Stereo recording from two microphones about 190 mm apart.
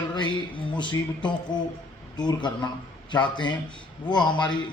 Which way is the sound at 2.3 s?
25° left (ahead or behind).